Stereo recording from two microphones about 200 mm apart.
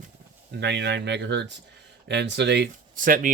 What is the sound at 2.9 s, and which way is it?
Speech, 45° right (ahead or behind).